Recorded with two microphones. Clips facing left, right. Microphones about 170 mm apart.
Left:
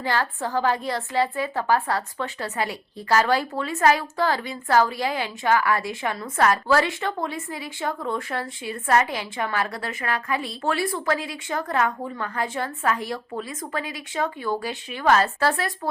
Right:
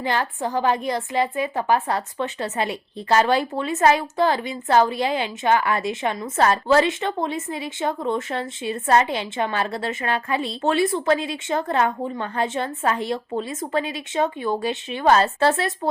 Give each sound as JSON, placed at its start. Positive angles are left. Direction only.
{"t": 0.0, "sound": "a woman's voice", "side_deg": -20}